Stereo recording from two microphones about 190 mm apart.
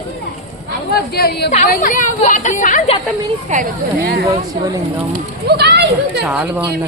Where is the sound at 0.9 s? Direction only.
55° left (ahead or behind).